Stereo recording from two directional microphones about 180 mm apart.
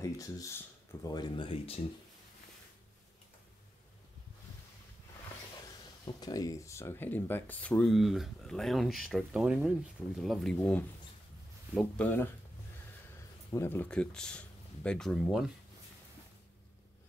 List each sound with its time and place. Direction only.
0.0 s speech: 20° left (ahead or behind)
6.0 s speech: 20° left (ahead or behind)
13.5 s speech: 15° left (ahead or behind); by 15.5 s centre (ahead or behind)